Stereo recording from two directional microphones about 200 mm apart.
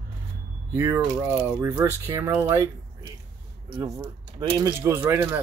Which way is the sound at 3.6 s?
20° right (ahead or behind).